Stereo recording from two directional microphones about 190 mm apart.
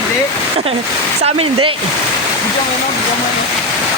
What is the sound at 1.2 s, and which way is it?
Speech, 30° right (ahead or behind).